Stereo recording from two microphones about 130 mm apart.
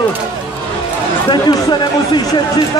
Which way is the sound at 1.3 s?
35° left (ahead or behind).